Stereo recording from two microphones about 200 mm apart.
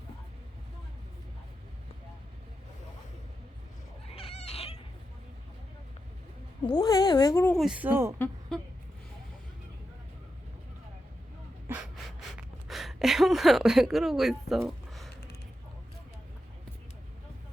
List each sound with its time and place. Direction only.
4.1 s cat: 30° left (ahead or behind)
6.7 s speech: 20° left (ahead or behind); by 8.1 s 10° right (ahead or behind)
8.2 s a woman's voice: 5° left (ahead or behind)
11.7 s gasp: 5° right (ahead or behind)